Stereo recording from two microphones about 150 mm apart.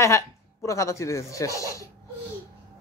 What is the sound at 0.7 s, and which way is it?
Speech, 20° left (ahead or behind).